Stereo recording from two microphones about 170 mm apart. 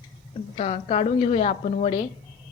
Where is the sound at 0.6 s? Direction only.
40° left (ahead or behind).